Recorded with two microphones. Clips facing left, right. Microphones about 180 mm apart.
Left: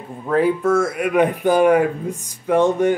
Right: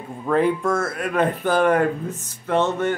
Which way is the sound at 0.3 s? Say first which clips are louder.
Left 3 dB; 5° left (ahead or behind).